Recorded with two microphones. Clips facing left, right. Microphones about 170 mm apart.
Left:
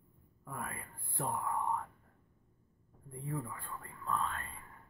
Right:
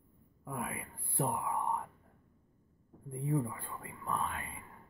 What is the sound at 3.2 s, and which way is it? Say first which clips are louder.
Speech: right 7 dB; 25° right (ahead or behind).